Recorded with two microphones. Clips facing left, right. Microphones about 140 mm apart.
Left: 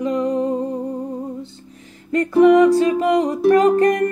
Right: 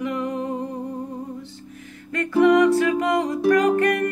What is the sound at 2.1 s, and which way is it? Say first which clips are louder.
Music: left 5 dB; 30° left (ahead or behind).